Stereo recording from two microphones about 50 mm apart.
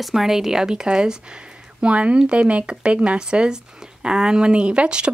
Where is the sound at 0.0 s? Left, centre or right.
Centre.